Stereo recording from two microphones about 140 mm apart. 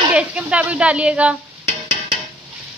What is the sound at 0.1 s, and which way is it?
Speech, 10° right (ahead or behind).